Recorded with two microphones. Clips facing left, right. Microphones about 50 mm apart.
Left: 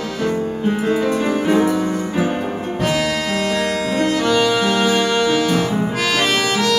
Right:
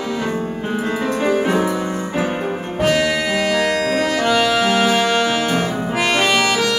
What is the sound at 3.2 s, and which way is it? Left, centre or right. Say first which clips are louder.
Music: right 2 dB; right.